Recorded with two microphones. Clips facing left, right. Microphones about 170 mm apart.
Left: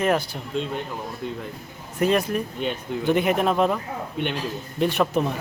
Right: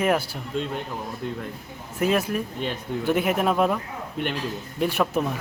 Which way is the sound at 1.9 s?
5° right (ahead or behind).